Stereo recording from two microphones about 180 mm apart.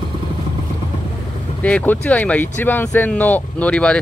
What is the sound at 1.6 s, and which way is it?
Speech, 10° left (ahead or behind).